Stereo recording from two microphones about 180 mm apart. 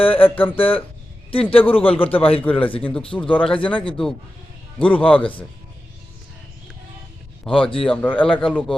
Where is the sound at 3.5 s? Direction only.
30° left (ahead or behind).